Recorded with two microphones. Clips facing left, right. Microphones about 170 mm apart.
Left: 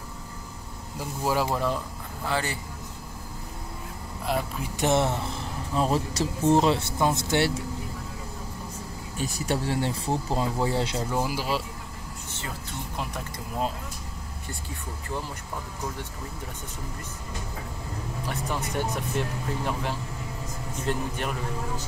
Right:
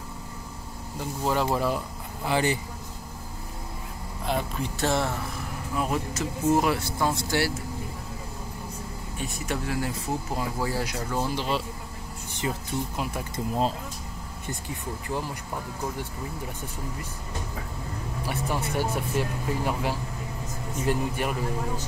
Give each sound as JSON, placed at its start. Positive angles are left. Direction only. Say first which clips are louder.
{"t": 1.2, "sound": "speech", "louder": "right 1 dB", "side_deg": 5}
{"t": 2.2, "sound": "speech", "louder": "right 4 dB", "side_deg": -15}
{"t": 4.3, "sound": "speech", "louder": "even", "side_deg": 5}
{"t": 4.7, "sound": "speech", "louder": "left 3 dB", "side_deg": 20}
{"t": 9.2, "sound": "speech", "louder": "left 3 dB", "side_deg": 35}
{"t": 11.1, "sound": "speech", "louder": "right 1 dB", "side_deg": 10}
{"t": 12.3, "sound": "a sound", "louder": "right 8 dB", "side_deg": -15}
{"t": 12.9, "sound": "speech", "louder": "right 2 dB", "side_deg": -5}
{"t": 18.2, "sound": "speech", "louder": "right 2 dB", "side_deg": -10}